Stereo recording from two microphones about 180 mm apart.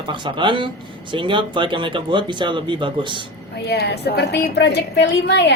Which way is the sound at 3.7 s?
65° left (ahead or behind).